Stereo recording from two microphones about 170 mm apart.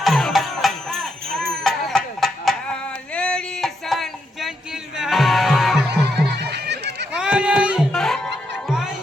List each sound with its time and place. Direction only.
0.0 s music: centre (ahead or behind)
2.2 s a sound: centre (ahead or behind)
5.9 s music: 75° right (ahead or behind)
7.1 s music: 5° right (ahead or behind)